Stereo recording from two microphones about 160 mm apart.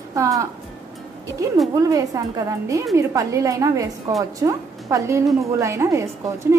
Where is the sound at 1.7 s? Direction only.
20° right (ahead or behind).